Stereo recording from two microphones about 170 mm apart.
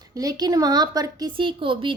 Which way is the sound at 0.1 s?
20° right (ahead or behind).